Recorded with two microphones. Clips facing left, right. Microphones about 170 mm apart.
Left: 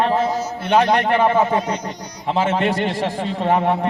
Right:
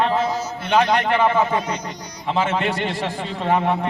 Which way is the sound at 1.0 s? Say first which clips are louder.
Left 2 dB; 35° left (ahead or behind).